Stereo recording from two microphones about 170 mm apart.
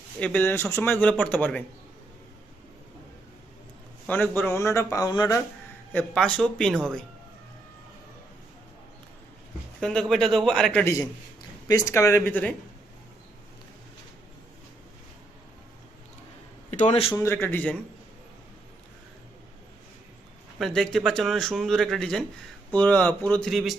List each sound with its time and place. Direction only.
0.2 s speech: 10° left (ahead or behind)
4.0 s speech: 10° left (ahead or behind)
5.9 s speech: 10° left (ahead or behind)
9.8 s speech: 5° left (ahead or behind)
10.8 s speech: 20° left (ahead or behind)
16.7 s a man's voice: 40° left (ahead or behind)
17.2 s speech: 15° left (ahead or behind)
20.6 s speech: centre (ahead or behind)